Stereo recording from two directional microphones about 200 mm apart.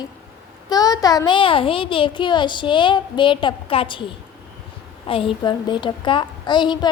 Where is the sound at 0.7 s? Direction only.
20° left (ahead or behind).